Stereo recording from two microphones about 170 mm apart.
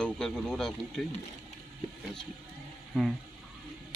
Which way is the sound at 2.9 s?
Centre (ahead or behind).